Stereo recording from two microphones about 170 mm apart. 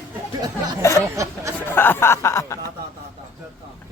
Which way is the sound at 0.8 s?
15° left (ahead or behind).